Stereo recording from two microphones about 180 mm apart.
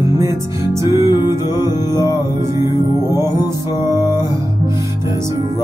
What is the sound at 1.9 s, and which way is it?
Music, 20° left (ahead or behind).